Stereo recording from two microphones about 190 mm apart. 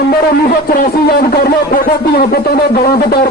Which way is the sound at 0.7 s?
50° left (ahead or behind).